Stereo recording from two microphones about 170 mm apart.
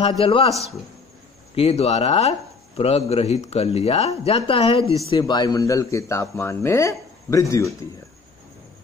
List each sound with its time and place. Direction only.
0.2 s speech: 35° left (ahead or behind); by 7.7 s 20° left (ahead or behind)